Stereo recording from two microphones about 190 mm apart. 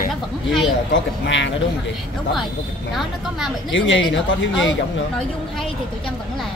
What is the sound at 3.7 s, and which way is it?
Speech, 75° left (ahead or behind).